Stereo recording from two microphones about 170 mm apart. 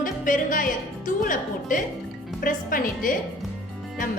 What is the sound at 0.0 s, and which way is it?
A woman's voice, 55° left (ahead or behind).